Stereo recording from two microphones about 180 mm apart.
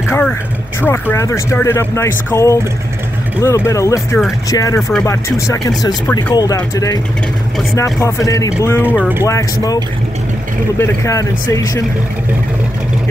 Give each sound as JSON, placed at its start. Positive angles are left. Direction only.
{"t": 0.1, "sound": "speech", "side_deg": 10}
{"t": 10.8, "sound": "speech", "side_deg": 15}